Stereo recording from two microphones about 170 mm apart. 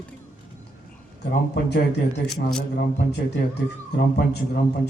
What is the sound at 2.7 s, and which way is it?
A man's voice, 80° left.